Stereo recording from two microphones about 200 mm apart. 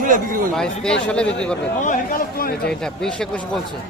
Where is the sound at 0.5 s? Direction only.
5° left (ahead or behind).